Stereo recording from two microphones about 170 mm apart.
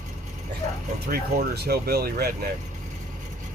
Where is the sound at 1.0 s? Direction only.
65° right (ahead or behind).